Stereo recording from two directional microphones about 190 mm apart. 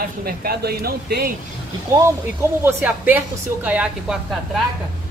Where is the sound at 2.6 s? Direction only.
10° right (ahead or behind).